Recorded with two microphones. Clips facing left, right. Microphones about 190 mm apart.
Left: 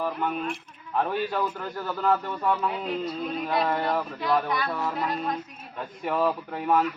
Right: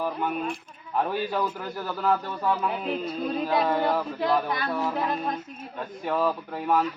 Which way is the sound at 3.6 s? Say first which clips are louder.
Even; 5° right (ahead or behind).